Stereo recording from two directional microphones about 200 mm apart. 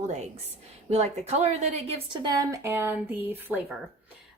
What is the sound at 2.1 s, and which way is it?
A woman's voice, 20° right (ahead or behind).